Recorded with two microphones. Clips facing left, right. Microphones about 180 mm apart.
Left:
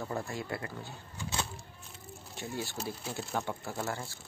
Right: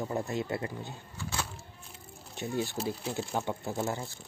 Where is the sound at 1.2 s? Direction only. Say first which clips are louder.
Even; 20° left (ahead or behind).